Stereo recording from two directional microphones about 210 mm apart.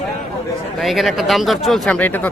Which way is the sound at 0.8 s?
Centre (ahead or behind).